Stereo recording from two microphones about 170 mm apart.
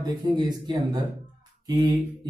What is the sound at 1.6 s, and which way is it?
Speech, 25° right (ahead or behind).